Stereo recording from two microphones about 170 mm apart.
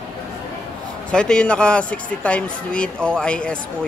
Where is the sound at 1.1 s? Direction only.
5° left (ahead or behind).